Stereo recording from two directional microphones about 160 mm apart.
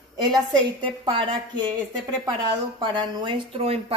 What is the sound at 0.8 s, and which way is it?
Speech, 30° right (ahead or behind).